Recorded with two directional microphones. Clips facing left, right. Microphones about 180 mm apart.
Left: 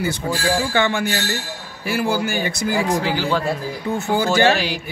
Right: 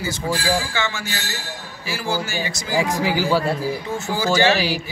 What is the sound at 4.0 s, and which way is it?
Speech, 60° left (ahead or behind).